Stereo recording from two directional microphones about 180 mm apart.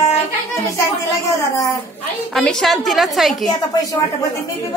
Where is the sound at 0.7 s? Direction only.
15° left (ahead or behind).